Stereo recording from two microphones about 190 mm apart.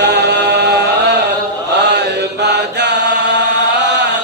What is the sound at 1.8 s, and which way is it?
Chant, 60° right (ahead or behind).